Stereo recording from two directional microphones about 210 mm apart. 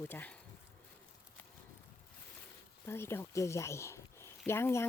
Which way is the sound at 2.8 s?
10° left (ahead or behind).